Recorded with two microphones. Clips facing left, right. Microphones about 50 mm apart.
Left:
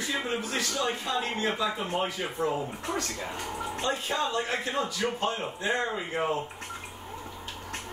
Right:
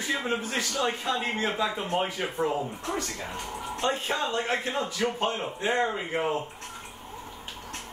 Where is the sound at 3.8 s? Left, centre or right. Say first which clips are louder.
Right 2 dB; right.